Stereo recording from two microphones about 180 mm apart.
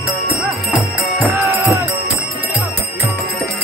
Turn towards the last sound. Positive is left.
turn(degrees=-15)  # may be behind; listen again after turning